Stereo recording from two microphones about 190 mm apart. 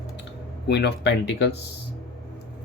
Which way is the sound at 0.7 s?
60° left (ahead or behind).